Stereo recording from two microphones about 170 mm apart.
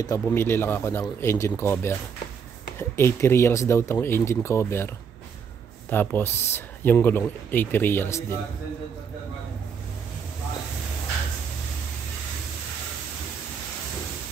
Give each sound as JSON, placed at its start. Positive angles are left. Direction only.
{"t": 0.0, "sound": "speech", "side_deg": 15}